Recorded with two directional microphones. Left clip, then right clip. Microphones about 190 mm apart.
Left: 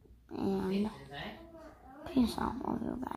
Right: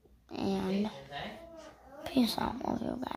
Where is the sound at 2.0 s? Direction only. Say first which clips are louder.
Right 2 dB; 15° right (ahead or behind).